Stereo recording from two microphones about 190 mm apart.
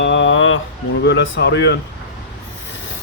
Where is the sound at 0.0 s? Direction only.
75° left (ahead or behind); by 0.6 s 90° left.